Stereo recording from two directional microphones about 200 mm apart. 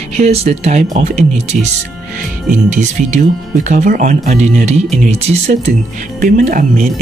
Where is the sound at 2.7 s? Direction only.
35° right (ahead or behind).